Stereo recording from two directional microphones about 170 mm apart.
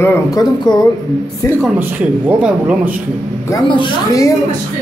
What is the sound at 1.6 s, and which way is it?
Speech, 10° right (ahead or behind).